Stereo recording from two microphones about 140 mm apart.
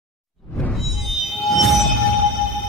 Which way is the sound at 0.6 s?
10° left (ahead or behind).